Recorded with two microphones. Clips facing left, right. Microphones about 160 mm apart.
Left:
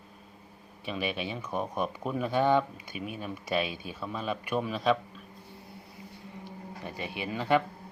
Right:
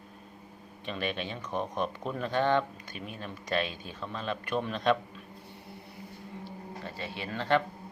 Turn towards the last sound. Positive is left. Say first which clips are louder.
# left 1 dB
turn(degrees=10)  # may be behind; listen again after turning